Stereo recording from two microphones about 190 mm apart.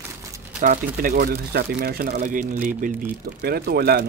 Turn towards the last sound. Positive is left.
turn(degrees=-55)  # may be behind; listen again after turning